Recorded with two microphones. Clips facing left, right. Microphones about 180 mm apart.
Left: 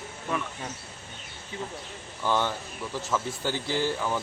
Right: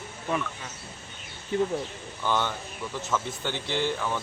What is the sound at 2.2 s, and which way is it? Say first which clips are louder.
Speech: left 1 dB; 5° left (ahead or behind).